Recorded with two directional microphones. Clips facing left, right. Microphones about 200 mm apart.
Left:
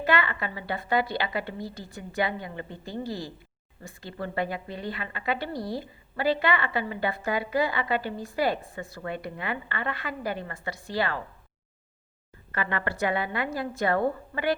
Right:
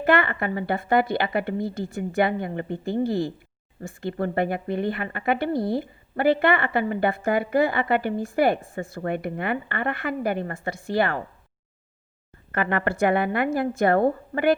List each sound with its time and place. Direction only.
0.0 s a woman's voice: 50° right (ahead or behind)
12.5 s a woman's voice: 50° right (ahead or behind)